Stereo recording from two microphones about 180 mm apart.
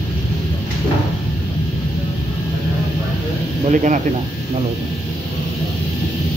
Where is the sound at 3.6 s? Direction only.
45° right (ahead or behind).